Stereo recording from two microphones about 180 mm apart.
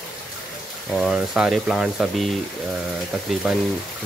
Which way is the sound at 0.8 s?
Centre (ahead or behind).